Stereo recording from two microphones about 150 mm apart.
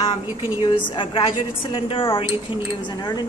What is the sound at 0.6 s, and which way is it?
A woman's voice, 35° left (ahead or behind).